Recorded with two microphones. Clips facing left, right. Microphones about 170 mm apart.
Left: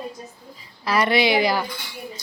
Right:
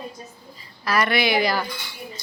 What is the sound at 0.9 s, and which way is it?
Speech, 25° left (ahead or behind).